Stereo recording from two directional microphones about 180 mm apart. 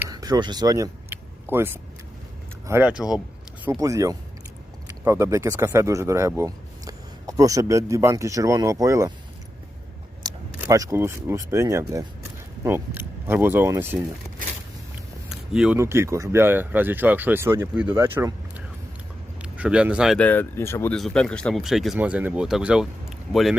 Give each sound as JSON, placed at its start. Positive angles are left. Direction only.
{"t": 0.1, "sound": "vehicle", "side_deg": -20}
{"t": 2.6, "sound": "speech", "side_deg": -15}
{"t": 10.3, "sound": "a sound", "side_deg": -25}
{"t": 10.6, "sound": "speech", "side_deg": -20}
{"t": 15.3, "sound": "speech", "side_deg": -5}
{"t": 20.1, "sound": "speech", "side_deg": 10}
{"t": 20.9, "sound": "speech", "side_deg": 5}